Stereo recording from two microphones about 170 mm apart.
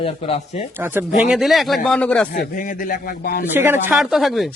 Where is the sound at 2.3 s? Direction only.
50° left (ahead or behind).